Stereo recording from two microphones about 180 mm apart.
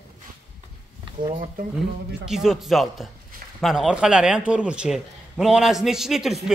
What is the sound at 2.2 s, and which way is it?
A man's voice, centre (ahead or behind).